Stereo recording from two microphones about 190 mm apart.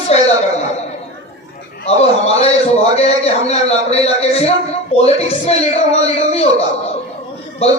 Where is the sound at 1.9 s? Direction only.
35° left (ahead or behind).